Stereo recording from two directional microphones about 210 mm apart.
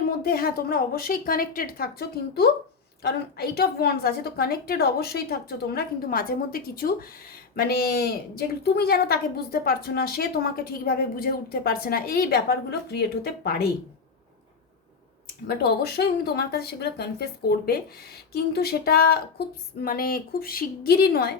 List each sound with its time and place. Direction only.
0.2 s speech: 45° left (ahead or behind)
15.6 s speech: 50° left (ahead or behind)
18.3 s speech: 50° left (ahead or behind)